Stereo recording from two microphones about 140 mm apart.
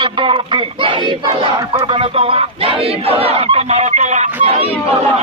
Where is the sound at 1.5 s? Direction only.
30° right (ahead or behind).